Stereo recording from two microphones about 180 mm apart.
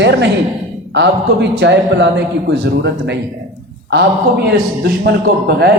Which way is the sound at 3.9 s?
65° right (ahead or behind).